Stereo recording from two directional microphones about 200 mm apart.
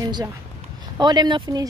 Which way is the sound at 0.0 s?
20° right (ahead or behind).